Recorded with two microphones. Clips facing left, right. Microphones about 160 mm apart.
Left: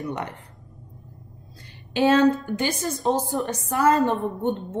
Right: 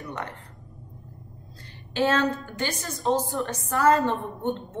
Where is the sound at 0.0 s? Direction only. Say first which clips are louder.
Left 5 dB; 20° left (ahead or behind).